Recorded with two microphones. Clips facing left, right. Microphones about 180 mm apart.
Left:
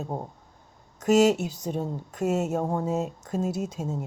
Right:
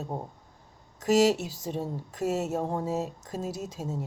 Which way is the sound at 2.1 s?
Centre (ahead or behind).